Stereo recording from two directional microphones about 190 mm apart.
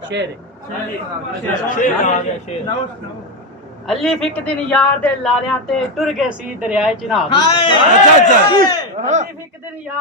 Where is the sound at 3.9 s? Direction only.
Centre (ahead or behind).